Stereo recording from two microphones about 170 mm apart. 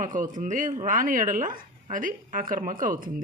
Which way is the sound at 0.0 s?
50° right (ahead or behind).